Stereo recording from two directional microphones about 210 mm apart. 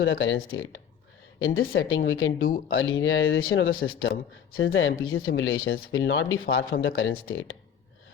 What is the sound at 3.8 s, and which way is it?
Speech, 55° left (ahead or behind).